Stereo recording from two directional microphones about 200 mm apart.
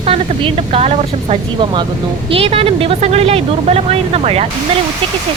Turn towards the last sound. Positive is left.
turn(degrees=-30)  # may be behind; listen again after turning